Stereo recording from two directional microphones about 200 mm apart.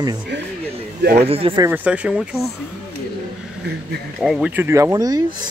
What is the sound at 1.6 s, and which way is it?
Speech, 10° right (ahead or behind).